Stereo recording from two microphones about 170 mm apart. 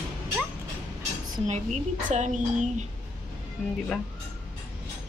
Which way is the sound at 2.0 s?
45° right (ahead or behind).